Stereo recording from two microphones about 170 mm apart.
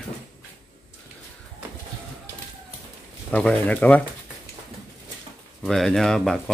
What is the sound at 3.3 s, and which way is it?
Speech, 10° left (ahead or behind).